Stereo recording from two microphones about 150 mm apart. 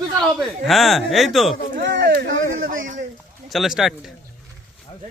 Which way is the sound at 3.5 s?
Centre (ahead or behind).